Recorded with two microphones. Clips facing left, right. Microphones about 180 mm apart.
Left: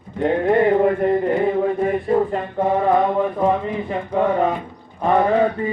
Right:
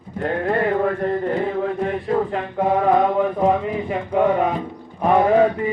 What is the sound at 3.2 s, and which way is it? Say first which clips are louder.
Speech: right 1 dB; 10° right (ahead or behind).